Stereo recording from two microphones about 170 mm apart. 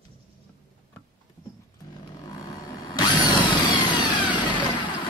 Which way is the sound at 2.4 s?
20° left (ahead or behind).